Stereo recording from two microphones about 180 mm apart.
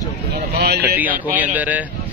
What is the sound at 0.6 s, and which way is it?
Speech, 60° right (ahead or behind).